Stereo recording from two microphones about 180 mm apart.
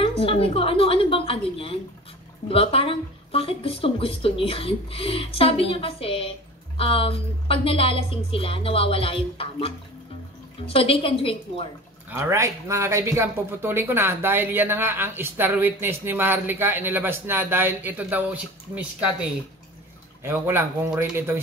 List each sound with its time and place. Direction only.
0.0 s a sound: 30° left (ahead or behind)
2.4 s speech: 30° left (ahead or behind)
12.1 s speech: 15° right (ahead or behind)
20.2 s speech: 10° right (ahead or behind)